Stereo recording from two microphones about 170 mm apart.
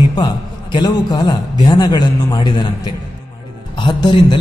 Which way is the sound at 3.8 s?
30° left (ahead or behind).